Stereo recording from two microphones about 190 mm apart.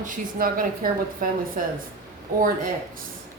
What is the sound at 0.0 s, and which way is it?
Speech, 50° right (ahead or behind).